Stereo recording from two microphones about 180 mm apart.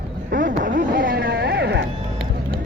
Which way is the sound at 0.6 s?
50° right (ahead or behind).